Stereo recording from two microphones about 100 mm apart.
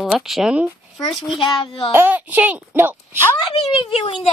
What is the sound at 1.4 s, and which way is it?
Speech, 55° left (ahead or behind).